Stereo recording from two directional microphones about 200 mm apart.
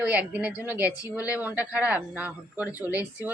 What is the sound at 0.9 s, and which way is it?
Speech, 15° left (ahead or behind).